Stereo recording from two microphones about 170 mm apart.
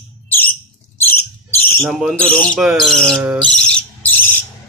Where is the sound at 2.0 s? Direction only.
5° left (ahead or behind).